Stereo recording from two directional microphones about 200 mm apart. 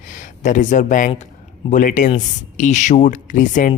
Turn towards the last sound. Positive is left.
turn(degrees=40)  # may be behind; listen again after turning